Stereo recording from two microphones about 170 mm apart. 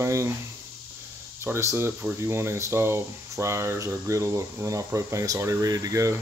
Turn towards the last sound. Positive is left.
turn(degrees=-20)  # may be behind; listen again after turning